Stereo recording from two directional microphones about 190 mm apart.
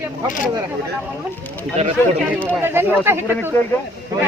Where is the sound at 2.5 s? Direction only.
10° right (ahead or behind).